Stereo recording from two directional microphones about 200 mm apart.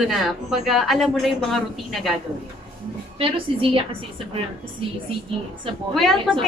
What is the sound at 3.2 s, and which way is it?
Speech, 25° right (ahead or behind).